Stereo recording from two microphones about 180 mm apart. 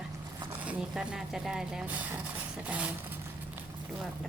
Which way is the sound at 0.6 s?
5° right (ahead or behind).